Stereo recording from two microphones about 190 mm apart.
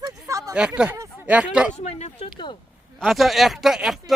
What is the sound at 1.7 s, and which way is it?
Speech, 35° left (ahead or behind).